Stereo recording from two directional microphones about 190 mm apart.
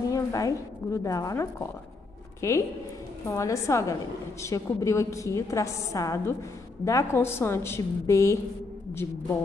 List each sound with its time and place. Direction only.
0.1 s a woman's voice: 15° left (ahead or behind)